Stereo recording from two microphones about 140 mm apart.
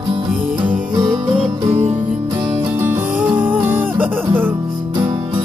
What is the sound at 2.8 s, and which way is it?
Music, 15° right (ahead or behind).